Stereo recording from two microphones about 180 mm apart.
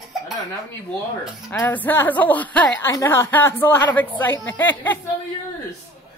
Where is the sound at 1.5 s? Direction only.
10° left (ahead or behind).